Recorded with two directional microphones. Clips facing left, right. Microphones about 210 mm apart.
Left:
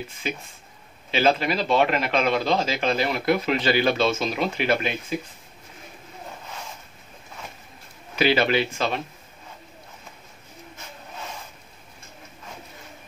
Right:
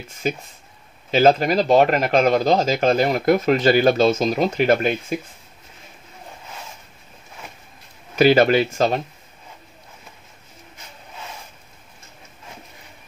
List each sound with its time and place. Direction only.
0.2 s speech: 45° right (ahead or behind)
8.2 s speech: 45° right (ahead or behind)